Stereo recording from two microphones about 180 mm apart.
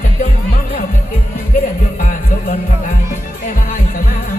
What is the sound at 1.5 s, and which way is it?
Music, 50° left (ahead or behind).